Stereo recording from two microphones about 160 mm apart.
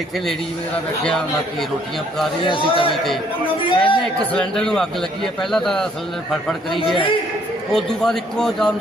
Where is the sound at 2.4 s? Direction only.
30° left (ahead or behind).